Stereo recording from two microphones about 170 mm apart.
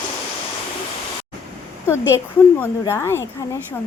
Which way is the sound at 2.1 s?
15° left (ahead or behind).